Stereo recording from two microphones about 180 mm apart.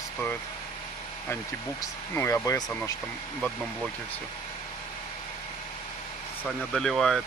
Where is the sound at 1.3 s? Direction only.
15° left (ahead or behind).